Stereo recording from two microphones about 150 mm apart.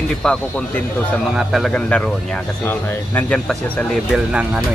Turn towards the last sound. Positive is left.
turn(degrees=0)  # may be behind; listen again after turning